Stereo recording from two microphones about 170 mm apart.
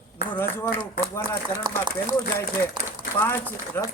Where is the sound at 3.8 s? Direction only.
15° left (ahead or behind).